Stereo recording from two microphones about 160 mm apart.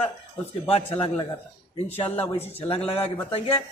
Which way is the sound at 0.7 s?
40° left (ahead or behind).